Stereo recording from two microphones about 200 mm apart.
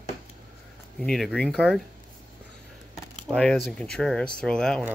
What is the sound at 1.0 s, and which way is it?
Speech, centre (ahead or behind).